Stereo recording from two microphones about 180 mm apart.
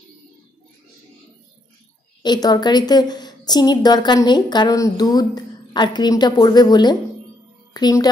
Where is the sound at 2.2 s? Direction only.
25° left (ahead or behind).